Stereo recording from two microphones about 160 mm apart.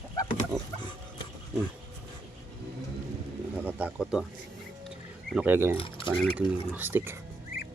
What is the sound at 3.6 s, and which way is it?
Speech, 10° right (ahead or behind).